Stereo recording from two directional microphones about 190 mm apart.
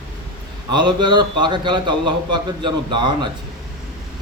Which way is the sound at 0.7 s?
25° right (ahead or behind).